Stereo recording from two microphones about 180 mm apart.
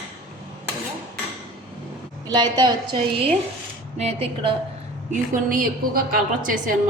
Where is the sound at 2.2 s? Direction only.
20° right (ahead or behind).